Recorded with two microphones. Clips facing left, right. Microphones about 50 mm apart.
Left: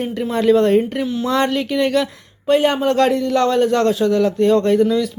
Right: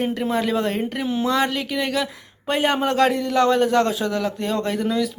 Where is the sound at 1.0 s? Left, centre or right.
Right.